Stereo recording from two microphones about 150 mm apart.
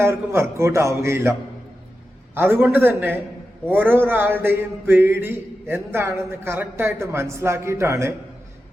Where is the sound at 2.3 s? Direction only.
15° right (ahead or behind).